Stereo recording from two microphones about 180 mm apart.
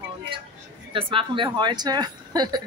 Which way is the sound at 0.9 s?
30° right (ahead or behind).